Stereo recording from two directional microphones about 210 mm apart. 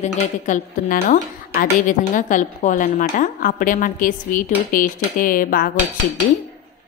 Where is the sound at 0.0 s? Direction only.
35° left (ahead or behind).